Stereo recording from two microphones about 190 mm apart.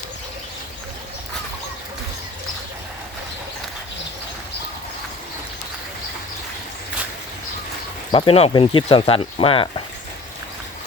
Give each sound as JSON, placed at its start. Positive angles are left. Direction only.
{"t": 8.1, "sound": "speech", "side_deg": 25}